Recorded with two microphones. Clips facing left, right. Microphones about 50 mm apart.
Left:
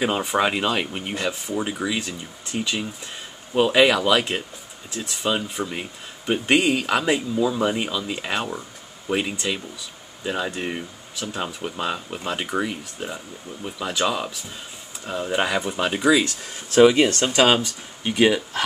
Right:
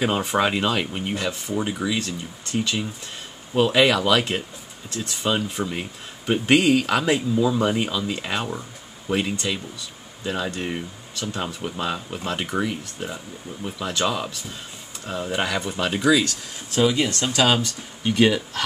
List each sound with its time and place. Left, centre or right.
0.0 s speech: centre
16.7 s speech: left
17.6 s speech: centre